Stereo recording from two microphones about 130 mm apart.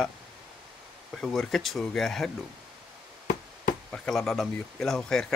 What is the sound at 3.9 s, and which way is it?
Speech, 5° left (ahead or behind).